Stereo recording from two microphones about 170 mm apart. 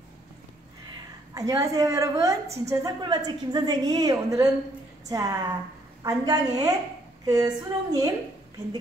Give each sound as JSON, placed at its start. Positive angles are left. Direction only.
{"t": 1.3, "sound": "a woman's voice", "side_deg": -20}
{"t": 2.4, "sound": "a woman's voice", "side_deg": -40}
{"t": 2.7, "sound": "a woman's voice", "side_deg": -20}